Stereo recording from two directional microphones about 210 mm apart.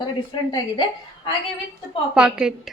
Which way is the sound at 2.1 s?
5° right (ahead or behind).